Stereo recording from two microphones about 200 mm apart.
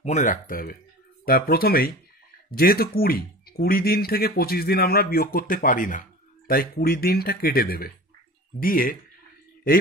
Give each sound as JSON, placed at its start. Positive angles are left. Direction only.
{"t": 0.0, "sound": "speech", "side_deg": 40}